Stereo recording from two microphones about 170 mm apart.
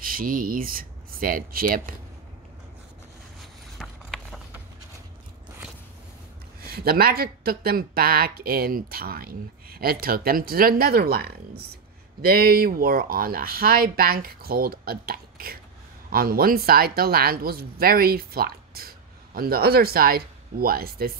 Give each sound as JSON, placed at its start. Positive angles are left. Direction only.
{"t": 0.0, "sound": "speech", "side_deg": -55}
{"t": 3.7, "sound": "a sound", "side_deg": 0}
{"t": 6.6, "sound": "speech", "side_deg": -65}